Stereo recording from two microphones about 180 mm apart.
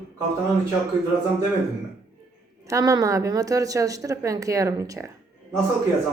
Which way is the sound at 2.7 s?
20° right (ahead or behind).